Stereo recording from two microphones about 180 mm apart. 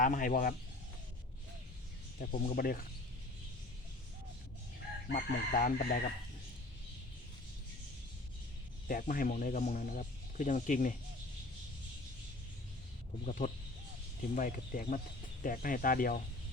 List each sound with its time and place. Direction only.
0.0 s speech: 50° left (ahead or behind)
2.1 s speech: 50° left (ahead or behind)
5.1 s speech: 50° left (ahead or behind)
8.9 s speech: 50° left (ahead or behind)
13.2 s speech: 45° left (ahead or behind)